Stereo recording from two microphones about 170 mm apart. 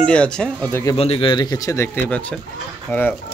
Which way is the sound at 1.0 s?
35° left (ahead or behind).